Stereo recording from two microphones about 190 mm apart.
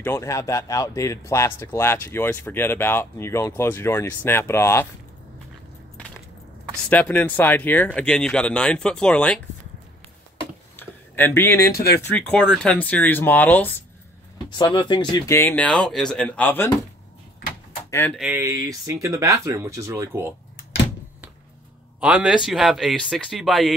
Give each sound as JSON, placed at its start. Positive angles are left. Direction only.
{"t": 0.0, "sound": "speech", "side_deg": 15}
{"t": 5.9, "sound": "a sound", "side_deg": 5}
{"t": 6.9, "sound": "speech", "side_deg": 10}
{"t": 10.8, "sound": "a sound", "side_deg": 10}
{"t": 11.7, "sound": "speech", "side_deg": 55}
{"t": 12.1, "sound": "speech", "side_deg": 5}
{"t": 14.6, "sound": "speech", "side_deg": 25}
{"t": 17.9, "sound": "speech", "side_deg": 10}
{"t": 18.2, "sound": "speech", "side_deg": -10}
{"t": 22.0, "sound": "speech", "side_deg": -5}